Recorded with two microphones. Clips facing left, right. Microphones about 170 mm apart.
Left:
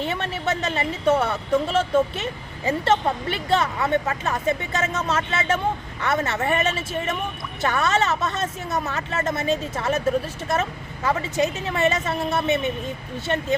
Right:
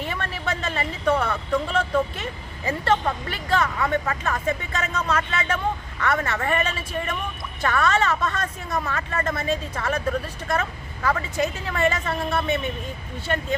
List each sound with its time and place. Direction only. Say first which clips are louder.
0.0 s speech: left 3 dB; 25° left (ahead or behind)